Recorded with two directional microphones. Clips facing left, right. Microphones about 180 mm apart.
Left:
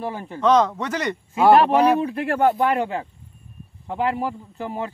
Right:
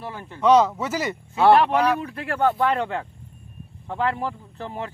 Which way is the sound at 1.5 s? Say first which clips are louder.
Left 3 dB; 30° left (ahead or behind).